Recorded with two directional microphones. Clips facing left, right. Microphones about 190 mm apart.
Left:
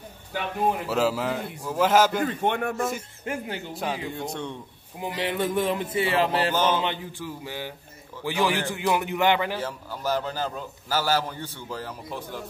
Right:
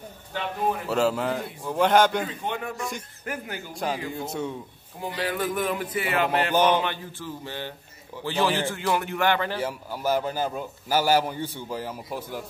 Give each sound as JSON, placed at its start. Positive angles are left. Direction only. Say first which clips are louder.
{"t": 0.8, "sound": "a man's voice", "louder": "right 1 dB", "side_deg": 0}
{"t": 2.2, "sound": "a man's voice", "louder": "left 6 dB", "side_deg": 65}
{"t": 3.3, "sound": "a sound", "louder": "left 3 dB", "side_deg": 25}
{"t": 3.7, "sound": "a man's voice", "louder": "right 3 dB", "side_deg": 0}
{"t": 5.0, "sound": "a sound", "louder": "left 1 dB", "side_deg": 20}
{"t": 6.5, "sound": "a man's voice", "louder": "right 3 dB", "side_deg": -15}
{"t": 6.8, "sound": "a sound", "louder": "left 1 dB", "side_deg": 20}
{"t": 7.2, "sound": "speech", "louder": "even", "side_deg": 10}
{"t": 9.6, "sound": "a man's voice", "louder": "right 2 dB", "side_deg": -10}